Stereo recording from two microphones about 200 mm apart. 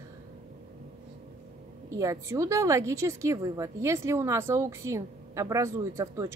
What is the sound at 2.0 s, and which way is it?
A woman's voice, 15° right (ahead or behind).